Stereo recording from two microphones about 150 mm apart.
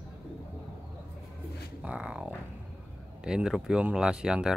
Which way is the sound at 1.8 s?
5° right (ahead or behind).